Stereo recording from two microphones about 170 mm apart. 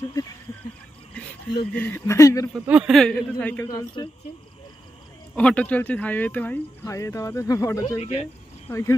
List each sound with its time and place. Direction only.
1.7 s speech: 10° left (ahead or behind)
2.5 s speech: 5° right (ahead or behind)
3.7 s speech: 25° left (ahead or behind)
5.3 s speech: 5° left (ahead or behind)
8.0 s speech: 35° left (ahead or behind)
8.6 s speech: 15° left (ahead or behind)